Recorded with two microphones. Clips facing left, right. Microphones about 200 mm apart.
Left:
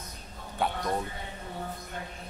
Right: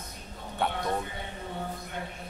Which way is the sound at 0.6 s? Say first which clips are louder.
Even; centre (ahead or behind).